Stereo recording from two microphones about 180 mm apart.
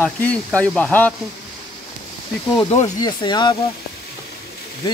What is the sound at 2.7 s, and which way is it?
Speech, 20° left (ahead or behind).